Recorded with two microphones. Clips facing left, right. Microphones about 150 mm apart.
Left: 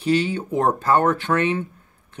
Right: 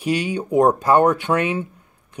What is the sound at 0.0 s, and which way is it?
Speech, 10° right (ahead or behind).